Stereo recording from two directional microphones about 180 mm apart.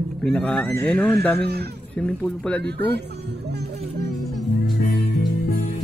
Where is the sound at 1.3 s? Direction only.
65° right (ahead or behind).